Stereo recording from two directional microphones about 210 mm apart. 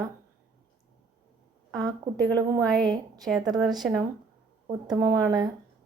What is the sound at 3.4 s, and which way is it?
Speech, centre (ahead or behind).